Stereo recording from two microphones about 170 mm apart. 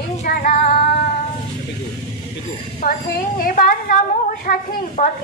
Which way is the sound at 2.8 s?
55° left (ahead or behind).